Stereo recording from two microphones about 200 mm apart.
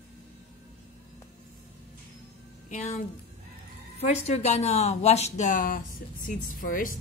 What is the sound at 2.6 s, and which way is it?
Speech, 40° left (ahead or behind).